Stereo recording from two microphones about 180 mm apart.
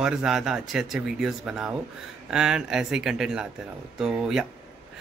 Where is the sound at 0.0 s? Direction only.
5° right (ahead or behind).